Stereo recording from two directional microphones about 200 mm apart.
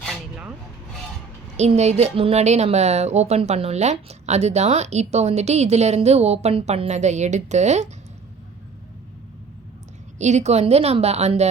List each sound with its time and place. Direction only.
0.0 s filing: 5° right (ahead or behind)
1.5 s a woman's voice: 35° right (ahead or behind)
10.2 s a woman's voice: 35° right (ahead or behind)